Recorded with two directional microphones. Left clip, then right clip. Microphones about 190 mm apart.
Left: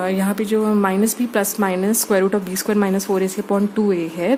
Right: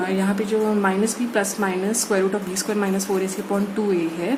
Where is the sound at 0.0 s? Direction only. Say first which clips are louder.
Left 2 dB; 55° left (ahead or behind).